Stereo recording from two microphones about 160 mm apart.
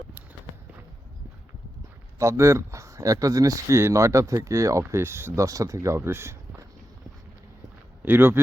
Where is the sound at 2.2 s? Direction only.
20° right (ahead or behind).